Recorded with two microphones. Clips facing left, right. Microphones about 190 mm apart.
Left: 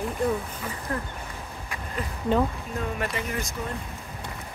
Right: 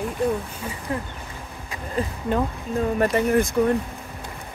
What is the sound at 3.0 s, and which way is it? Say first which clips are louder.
Speech: right 11 dB; 45° right (ahead or behind).